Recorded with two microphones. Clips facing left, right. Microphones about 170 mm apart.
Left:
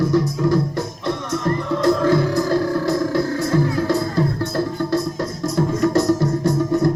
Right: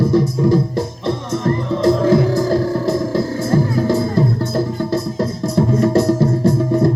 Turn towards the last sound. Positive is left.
turn(degrees=-30)  # may be behind; listen again after turning